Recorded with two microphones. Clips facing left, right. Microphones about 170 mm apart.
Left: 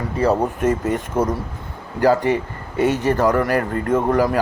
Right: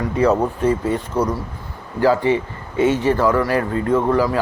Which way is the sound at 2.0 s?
45° left (ahead or behind).